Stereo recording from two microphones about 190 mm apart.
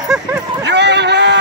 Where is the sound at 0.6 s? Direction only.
65° right (ahead or behind).